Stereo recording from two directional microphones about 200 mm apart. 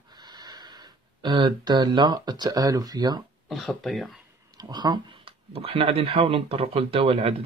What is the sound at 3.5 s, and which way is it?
Speech, centre (ahead or behind).